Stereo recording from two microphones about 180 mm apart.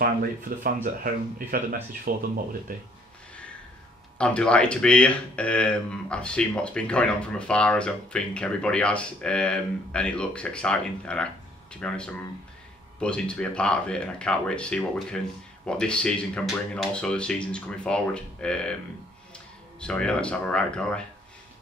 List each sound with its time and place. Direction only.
1.0 s speech: 55° right (ahead or behind)
4.2 s speech: 5° left (ahead or behind)